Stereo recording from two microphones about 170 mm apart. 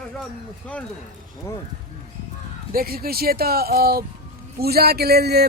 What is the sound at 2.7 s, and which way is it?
Speech, 60° right (ahead or behind).